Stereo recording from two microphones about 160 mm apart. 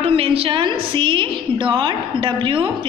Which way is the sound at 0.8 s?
30° right (ahead or behind).